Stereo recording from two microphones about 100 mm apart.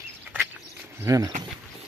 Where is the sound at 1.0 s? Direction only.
35° right (ahead or behind).